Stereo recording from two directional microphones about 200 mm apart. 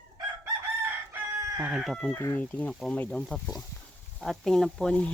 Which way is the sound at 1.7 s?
Centre (ahead or behind).